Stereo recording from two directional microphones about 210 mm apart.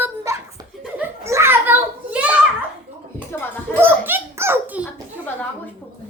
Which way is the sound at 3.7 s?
10° right (ahead or behind).